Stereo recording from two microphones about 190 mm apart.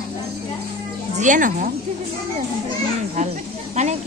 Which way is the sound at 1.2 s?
45° right (ahead or behind).